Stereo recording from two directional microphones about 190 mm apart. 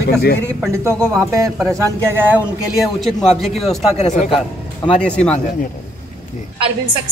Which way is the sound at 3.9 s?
35° left (ahead or behind).